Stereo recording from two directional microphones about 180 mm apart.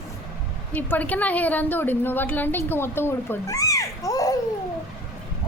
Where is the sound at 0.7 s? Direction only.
10° left (ahead or behind).